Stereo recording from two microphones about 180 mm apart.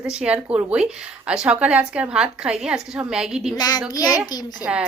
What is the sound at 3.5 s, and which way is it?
Speech, 20° left (ahead or behind).